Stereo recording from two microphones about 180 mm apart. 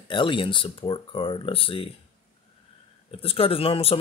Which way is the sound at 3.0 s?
30° left (ahead or behind).